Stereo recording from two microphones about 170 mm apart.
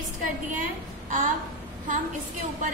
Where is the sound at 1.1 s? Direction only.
50° right (ahead or behind).